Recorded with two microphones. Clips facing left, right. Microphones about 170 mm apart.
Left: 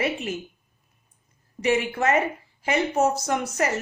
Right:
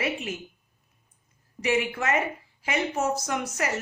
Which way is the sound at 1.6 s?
35° left (ahead or behind).